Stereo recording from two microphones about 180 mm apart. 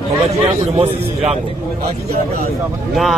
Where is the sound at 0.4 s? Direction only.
35° right (ahead or behind).